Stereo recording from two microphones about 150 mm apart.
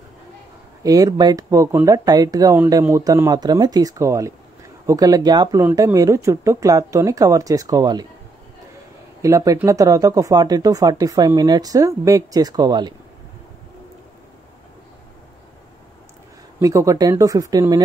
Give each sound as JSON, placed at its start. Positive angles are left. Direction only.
{"t": 0.8, "sound": "speech", "side_deg": -25}
{"t": 9.2, "sound": "speech", "side_deg": -20}
{"t": 16.6, "sound": "speech", "side_deg": -20}